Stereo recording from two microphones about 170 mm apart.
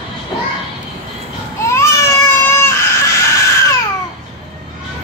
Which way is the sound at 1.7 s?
15° left (ahead or behind).